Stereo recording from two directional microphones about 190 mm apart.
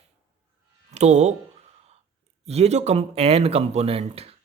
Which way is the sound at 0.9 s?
35° right (ahead or behind).